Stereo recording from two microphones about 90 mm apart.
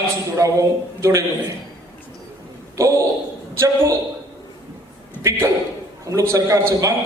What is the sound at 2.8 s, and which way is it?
A man's voice, 35° right (ahead or behind).